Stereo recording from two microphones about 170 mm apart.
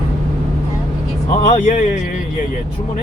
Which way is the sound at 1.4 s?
40° left (ahead or behind).